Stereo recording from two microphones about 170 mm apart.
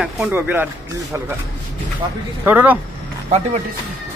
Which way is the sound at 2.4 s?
10° right (ahead or behind).